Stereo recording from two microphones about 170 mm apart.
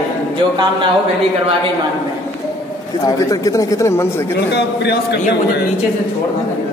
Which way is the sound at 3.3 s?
20° left (ahead or behind).